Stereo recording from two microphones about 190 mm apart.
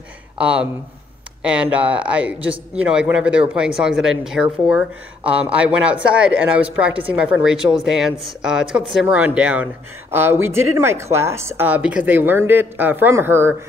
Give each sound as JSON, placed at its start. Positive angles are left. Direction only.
{"t": 0.4, "sound": "speech", "side_deg": -5}